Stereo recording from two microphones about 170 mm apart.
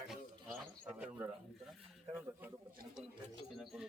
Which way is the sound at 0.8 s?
5° right (ahead or behind).